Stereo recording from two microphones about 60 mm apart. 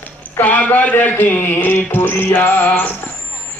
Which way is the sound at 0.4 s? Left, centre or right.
Left.